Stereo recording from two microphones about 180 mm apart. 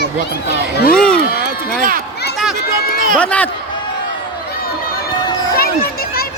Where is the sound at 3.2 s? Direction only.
10° left (ahead or behind).